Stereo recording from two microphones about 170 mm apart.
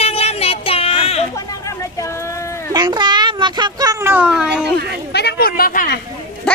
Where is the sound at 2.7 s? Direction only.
25° right (ahead or behind); by 4.7 s 5° right (ahead or behind).